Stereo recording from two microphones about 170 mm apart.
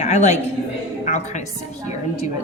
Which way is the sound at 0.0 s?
45° left (ahead or behind).